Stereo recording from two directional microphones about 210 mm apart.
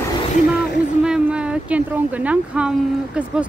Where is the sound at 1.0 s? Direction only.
5° right (ahead or behind).